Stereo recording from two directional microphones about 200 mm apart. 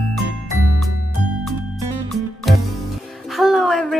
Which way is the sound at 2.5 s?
Centre (ahead or behind).